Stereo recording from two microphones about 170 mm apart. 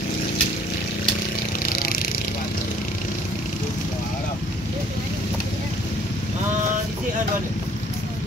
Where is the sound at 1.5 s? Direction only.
55° left (ahead or behind).